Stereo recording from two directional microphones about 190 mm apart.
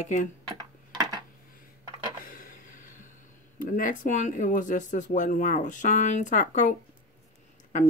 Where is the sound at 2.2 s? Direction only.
45° left (ahead or behind).